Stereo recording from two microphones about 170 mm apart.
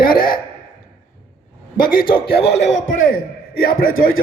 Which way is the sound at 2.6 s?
45° left (ahead or behind).